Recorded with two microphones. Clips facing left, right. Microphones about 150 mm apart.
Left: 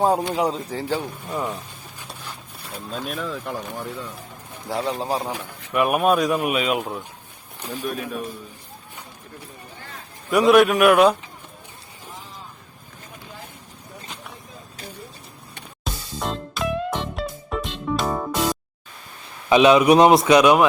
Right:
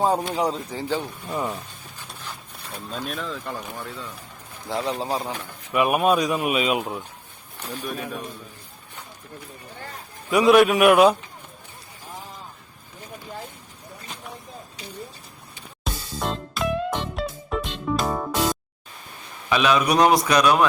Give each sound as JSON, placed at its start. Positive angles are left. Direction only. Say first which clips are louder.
{"t": 0.0, "sound": "speech", "louder": "left 2 dB", "side_deg": 5}
{"t": 5.2, "sound": "speech", "louder": "left 2 dB", "side_deg": 15}
{"t": 5.7, "sound": "speech", "louder": "left 1 dB", "side_deg": 0}
{"t": 10.3, "sound": "speech", "louder": "left 1 dB", "side_deg": 0}
{"t": 15.8, "sound": "music", "louder": "even", "side_deg": 0}
{"t": 19.5, "sound": "speech", "louder": "left 7 dB", "side_deg": 20}